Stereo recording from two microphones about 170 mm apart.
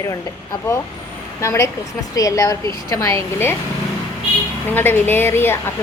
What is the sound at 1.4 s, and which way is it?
A woman's voice, 15° left (ahead or behind).